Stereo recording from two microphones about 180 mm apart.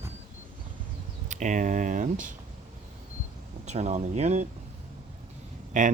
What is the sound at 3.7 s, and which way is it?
Speech, 40° right (ahead or behind).